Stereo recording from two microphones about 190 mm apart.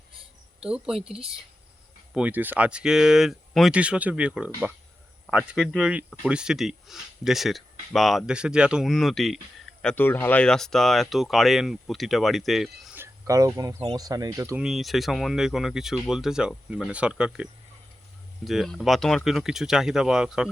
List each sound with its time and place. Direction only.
0.6 s speech: 5° right (ahead or behind)
2.1 s speech: 10° right (ahead or behind)
14.6 s speech: centre (ahead or behind)